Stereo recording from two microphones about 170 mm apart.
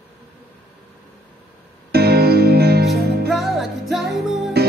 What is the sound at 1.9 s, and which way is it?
Music, 65° right (ahead or behind).